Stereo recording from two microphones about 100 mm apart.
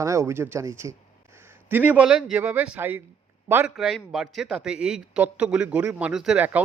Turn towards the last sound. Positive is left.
turn(degrees=-15)  # may be behind; listen again after turning